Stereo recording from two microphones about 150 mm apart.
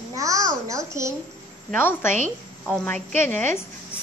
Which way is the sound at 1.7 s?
15° left (ahead or behind).